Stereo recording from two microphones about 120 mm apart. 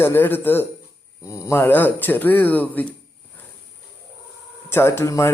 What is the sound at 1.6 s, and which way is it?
A man's voice, 15° left (ahead or behind).